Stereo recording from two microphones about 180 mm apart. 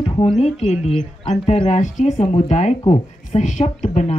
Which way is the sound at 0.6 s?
Centre (ahead or behind).